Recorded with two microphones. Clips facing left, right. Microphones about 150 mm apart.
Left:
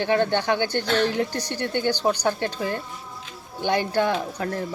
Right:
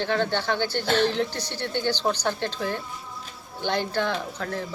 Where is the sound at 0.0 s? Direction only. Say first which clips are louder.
Left 4 dB; 15° left (ahead or behind).